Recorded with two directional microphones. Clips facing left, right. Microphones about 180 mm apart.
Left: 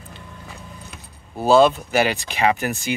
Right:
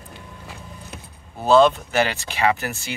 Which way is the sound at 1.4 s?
10° left (ahead or behind).